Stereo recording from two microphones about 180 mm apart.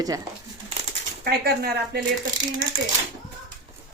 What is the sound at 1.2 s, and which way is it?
Speech, 60° right (ahead or behind).